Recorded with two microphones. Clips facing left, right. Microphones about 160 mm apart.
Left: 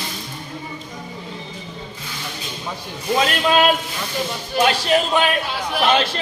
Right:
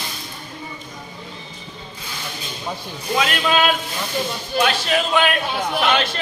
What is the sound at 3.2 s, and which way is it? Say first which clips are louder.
Speech: left 2 dB; 35° left (ahead or behind).